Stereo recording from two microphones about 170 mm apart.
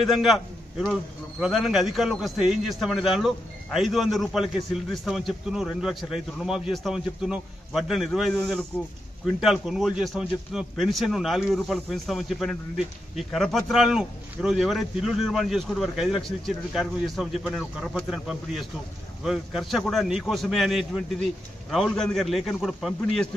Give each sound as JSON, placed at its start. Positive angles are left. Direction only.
{"t": 0.0, "sound": "a man's voice", "side_deg": 0}